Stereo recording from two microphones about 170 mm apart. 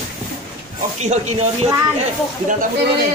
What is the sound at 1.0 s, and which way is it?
Speech, 40° right (ahead or behind).